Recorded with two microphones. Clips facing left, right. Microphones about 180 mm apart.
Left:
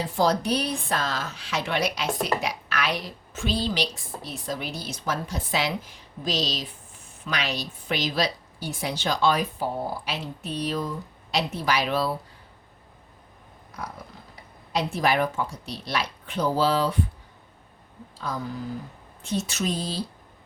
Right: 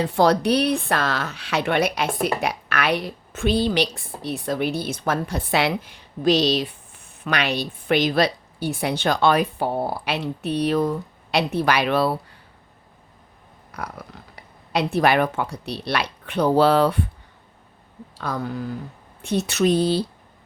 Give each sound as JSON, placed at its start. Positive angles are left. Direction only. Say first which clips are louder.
{"t": 0.0, "sound": "speech", "louder": "right 5 dB", "side_deg": -65}
{"t": 13.7, "sound": "a sound", "louder": "right 3 dB", "side_deg": -65}
{"t": 14.7, "sound": "speech", "louder": "right 5 dB", "side_deg": -65}
{"t": 18.2, "sound": "speech", "louder": "right 4 dB", "side_deg": -65}